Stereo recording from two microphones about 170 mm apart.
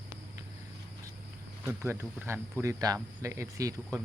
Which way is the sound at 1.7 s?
15° right (ahead or behind).